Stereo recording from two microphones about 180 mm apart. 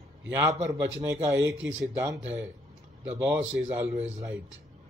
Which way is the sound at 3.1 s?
10° right (ahead or behind).